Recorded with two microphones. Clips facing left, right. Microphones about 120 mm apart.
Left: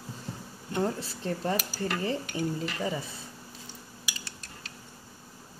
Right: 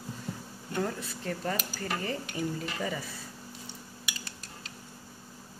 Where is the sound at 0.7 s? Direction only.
25° left (ahead or behind).